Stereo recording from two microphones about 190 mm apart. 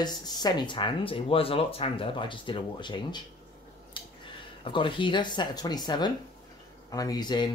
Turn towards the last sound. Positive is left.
turn(degrees=20)  # may be behind; listen again after turning